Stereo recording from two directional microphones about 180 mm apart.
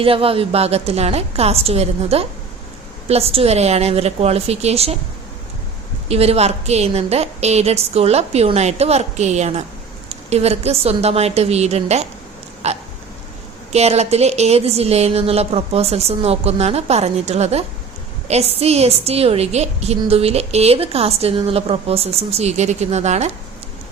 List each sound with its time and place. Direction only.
0.0 s a woman's voice: 30° right (ahead or behind)
6.1 s a woman's voice: 35° right (ahead or behind)